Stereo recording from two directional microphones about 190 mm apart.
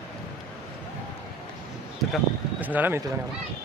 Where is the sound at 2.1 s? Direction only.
10° right (ahead or behind).